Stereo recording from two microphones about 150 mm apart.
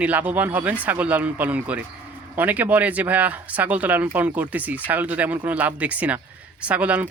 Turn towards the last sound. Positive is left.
turn(degrees=-10)  # may be behind; listen again after turning